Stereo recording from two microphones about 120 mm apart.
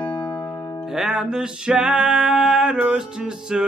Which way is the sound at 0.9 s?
5° right (ahead or behind).